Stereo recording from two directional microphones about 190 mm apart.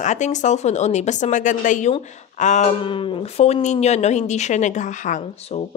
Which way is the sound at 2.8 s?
25° left (ahead or behind).